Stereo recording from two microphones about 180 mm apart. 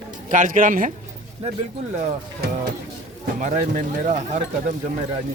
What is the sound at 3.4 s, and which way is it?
Speech, 45° right (ahead or behind).